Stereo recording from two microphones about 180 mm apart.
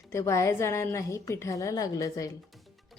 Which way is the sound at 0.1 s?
15° left (ahead or behind).